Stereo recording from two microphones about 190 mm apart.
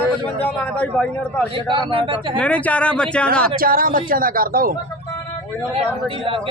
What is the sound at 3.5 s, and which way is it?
Speech, 50° right (ahead or behind).